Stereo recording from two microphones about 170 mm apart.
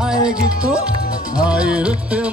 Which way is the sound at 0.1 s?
20° left (ahead or behind).